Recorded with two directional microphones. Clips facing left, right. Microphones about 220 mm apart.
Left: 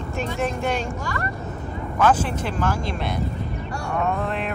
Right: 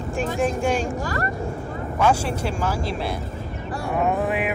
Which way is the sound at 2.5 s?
10° right (ahead or behind).